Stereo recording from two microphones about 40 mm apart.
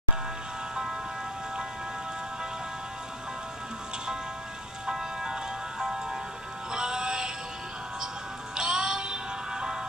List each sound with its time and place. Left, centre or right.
4.8 s music: centre
6.7 s synthetic singing: centre
8.5 s music: centre